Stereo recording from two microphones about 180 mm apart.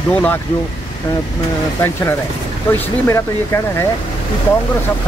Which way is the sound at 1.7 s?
10° left (ahead or behind).